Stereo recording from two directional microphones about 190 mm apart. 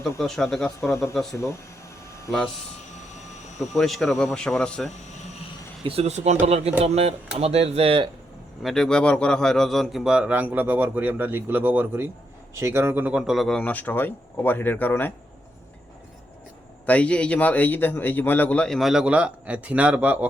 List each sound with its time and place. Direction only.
0.2 s a man's voice: centre (ahead or behind)
1.3 s a man's voice: 15° left (ahead or behind)
2.9 s vehicle: 35° left (ahead or behind)
3.6 s a man's voice: centre (ahead or behind)
5.8 s speech: 30° right (ahead or behind)
8.6 s a man's voice: centre (ahead or behind)
16.8 s a man's voice: 5° left (ahead or behind)